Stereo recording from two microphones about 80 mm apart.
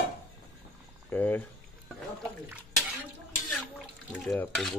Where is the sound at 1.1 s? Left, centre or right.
Left.